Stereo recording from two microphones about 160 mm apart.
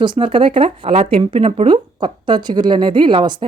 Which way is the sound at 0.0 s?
30° right (ahead or behind).